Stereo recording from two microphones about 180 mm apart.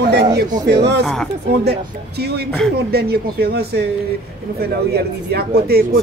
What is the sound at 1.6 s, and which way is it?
Speech, 60° right (ahead or behind).